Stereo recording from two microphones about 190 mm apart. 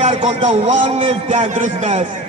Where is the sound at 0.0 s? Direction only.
35° right (ahead or behind).